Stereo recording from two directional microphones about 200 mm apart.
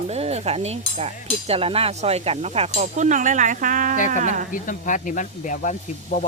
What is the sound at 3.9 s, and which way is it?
Speech, 40° left (ahead or behind).